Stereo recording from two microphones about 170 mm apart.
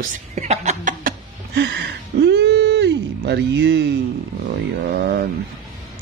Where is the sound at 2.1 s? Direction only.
75° right (ahead or behind).